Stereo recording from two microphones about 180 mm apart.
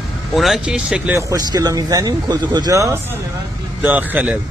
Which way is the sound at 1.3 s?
20° right (ahead or behind).